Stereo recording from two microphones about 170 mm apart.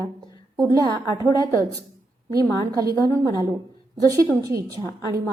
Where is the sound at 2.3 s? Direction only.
20° right (ahead or behind).